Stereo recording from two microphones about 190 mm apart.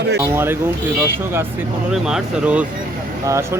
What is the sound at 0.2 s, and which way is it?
A man's voice, 10° right (ahead or behind).